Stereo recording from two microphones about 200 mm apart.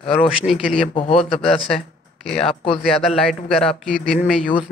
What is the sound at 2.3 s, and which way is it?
Speech, 30° left (ahead or behind).